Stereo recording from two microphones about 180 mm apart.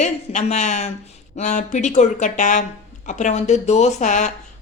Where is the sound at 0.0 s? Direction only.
40° left (ahead or behind).